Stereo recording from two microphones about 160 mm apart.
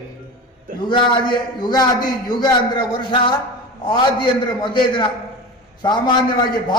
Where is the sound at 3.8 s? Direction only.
30° left (ahead or behind).